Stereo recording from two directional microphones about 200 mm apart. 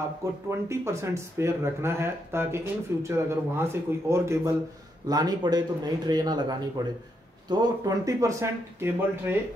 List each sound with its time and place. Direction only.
0.5 s speech: 15° right (ahead or behind)